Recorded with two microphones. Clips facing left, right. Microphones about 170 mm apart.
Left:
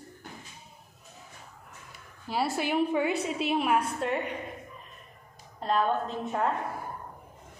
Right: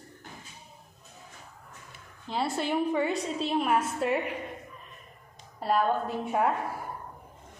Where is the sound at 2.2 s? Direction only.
5° left (ahead or behind).